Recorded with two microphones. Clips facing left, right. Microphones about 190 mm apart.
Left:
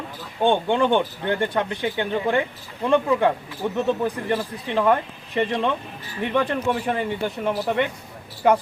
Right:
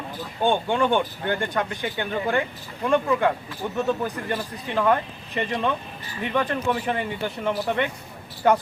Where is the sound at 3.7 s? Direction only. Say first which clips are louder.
Left 2 dB; 25° left (ahead or behind).